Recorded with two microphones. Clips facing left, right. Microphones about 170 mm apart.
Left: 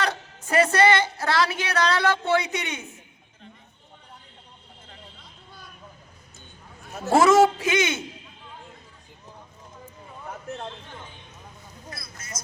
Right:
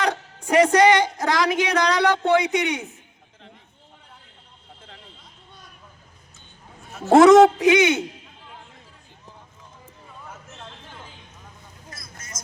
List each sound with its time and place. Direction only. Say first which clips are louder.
0.0 s speech: right 3 dB; 15° right (ahead or behind)
7.1 s speech: right 6 dB; 20° right (ahead or behind)